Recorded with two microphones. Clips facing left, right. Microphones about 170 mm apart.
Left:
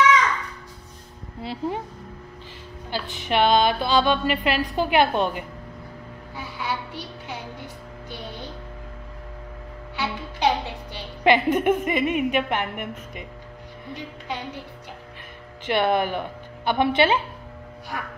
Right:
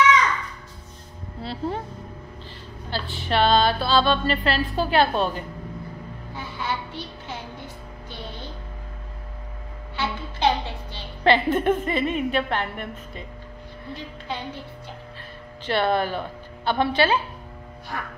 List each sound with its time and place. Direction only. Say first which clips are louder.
1.4 s speech: even; 15° left (ahead or behind)
2.9 s a woman's voice: even; 15° left (ahead or behind)
6.3 s music: even; 10° left (ahead or behind)
9.9 s a woman's voice: even; 15° left (ahead or behind)
15.6 s a woman's voice: left 1 dB; 15° left (ahead or behind)
17.9 s a woman's voice: even; 10° left (ahead or behind)